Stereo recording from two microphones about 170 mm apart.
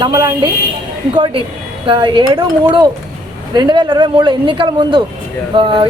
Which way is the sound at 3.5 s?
25° right (ahead or behind).